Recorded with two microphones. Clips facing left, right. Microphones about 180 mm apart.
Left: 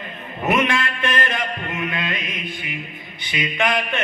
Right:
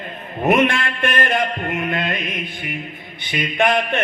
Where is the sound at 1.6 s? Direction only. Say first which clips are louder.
Right 4 dB; 45° right (ahead or behind).